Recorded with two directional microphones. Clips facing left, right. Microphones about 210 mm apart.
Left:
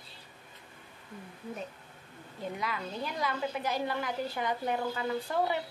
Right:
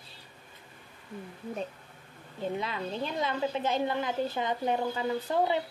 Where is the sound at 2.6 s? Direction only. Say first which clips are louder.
Right 3 dB; 25° right (ahead or behind).